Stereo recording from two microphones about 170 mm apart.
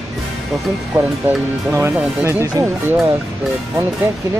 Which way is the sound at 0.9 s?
15° right (ahead or behind).